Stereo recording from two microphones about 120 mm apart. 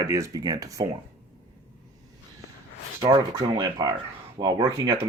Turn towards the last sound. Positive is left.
turn(degrees=-25)  # may be behind; listen again after turning